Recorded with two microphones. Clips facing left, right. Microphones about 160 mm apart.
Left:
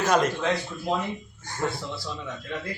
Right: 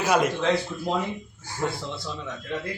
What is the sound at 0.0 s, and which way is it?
Speech, 10° right (ahead or behind).